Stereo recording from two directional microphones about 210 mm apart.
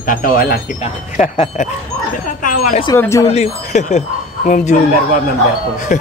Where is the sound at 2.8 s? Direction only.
15° left (ahead or behind).